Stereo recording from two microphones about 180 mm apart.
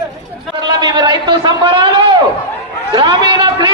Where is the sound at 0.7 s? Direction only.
25° right (ahead or behind).